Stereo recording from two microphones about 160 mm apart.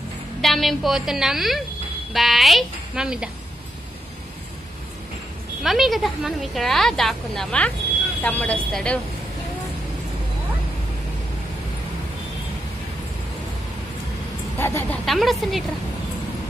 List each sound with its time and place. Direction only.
0.4 s a woman's voice: centre (ahead or behind)
5.6 s a woman's voice: centre (ahead or behind)
14.6 s speech: 15° left (ahead or behind)
15.0 s a woman's voice: centre (ahead or behind)